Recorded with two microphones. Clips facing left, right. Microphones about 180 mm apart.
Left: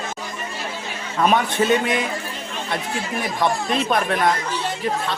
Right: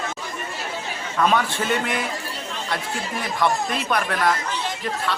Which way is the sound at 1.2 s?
20° left (ahead or behind).